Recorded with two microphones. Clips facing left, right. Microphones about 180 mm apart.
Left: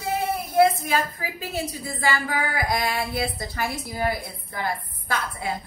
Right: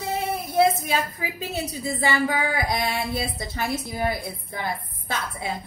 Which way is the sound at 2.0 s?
20° right (ahead or behind).